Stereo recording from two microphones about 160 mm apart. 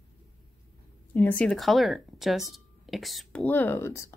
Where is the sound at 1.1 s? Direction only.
10° left (ahead or behind).